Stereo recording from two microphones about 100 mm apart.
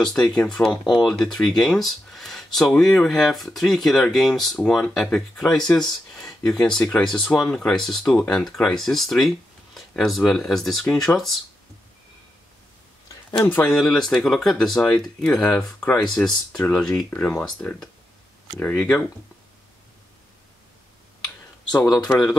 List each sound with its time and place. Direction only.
0.0 s speech: 5° left (ahead or behind)
13.7 s speech: 5° left (ahead or behind)
15.4 s speech: 15° left (ahead or behind)
16.1 s speech: 5° left (ahead or behind)
21.8 s speech: 40° left (ahead or behind)